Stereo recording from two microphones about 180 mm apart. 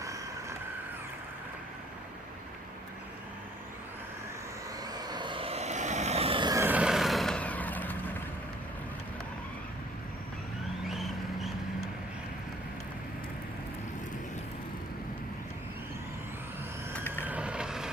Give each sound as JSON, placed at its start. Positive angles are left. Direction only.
{"t": 4.9, "sound": "vehicle", "side_deg": -25}
{"t": 6.6, "sound": "vehicle", "side_deg": -10}
{"t": 10.8, "sound": "vehicle", "side_deg": 0}
{"t": 17.2, "sound": "vehicle", "side_deg": -5}